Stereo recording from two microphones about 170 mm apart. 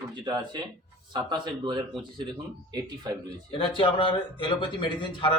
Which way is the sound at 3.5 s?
30° left (ahead or behind).